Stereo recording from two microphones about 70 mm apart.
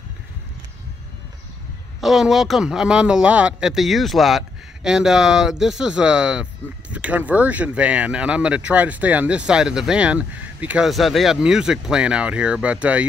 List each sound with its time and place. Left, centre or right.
2.0 s speech: centre; by 10.8 s right
10.9 s speech: centre